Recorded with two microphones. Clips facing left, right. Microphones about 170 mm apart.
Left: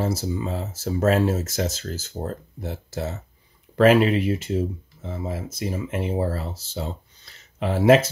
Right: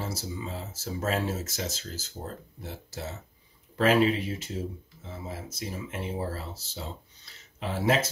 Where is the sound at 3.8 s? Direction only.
70° left (ahead or behind).